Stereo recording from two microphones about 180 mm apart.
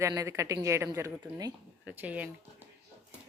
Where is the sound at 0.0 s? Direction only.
15° right (ahead or behind).